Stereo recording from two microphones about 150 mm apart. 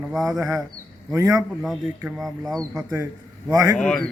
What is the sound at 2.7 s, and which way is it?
Speech, 15° right (ahead or behind).